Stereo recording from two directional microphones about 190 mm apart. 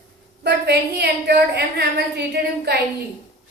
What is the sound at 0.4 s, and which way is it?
A woman's voice, 60° right (ahead or behind).